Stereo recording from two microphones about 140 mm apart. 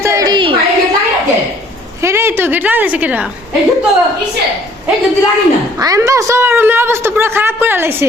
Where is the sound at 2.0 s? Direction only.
20° right (ahead or behind).